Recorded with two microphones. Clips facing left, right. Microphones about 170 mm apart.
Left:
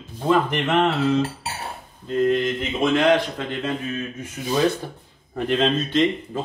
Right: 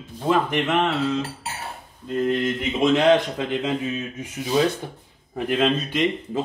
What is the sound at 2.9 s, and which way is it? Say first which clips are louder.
Speech: even; 20° right (ahead or behind).